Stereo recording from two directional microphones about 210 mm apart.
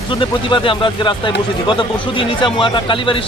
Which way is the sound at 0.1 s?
25° left (ahead or behind).